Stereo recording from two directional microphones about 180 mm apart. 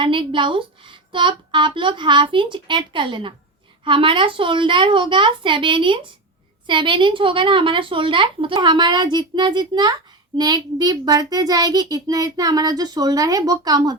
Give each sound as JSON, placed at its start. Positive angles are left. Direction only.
{"t": 0.0, "sound": "a child's voice", "side_deg": -30}